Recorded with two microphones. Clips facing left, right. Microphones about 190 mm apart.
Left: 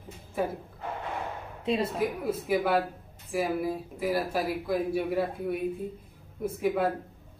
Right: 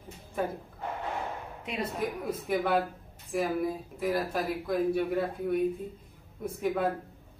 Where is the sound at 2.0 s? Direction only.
5° left (ahead or behind).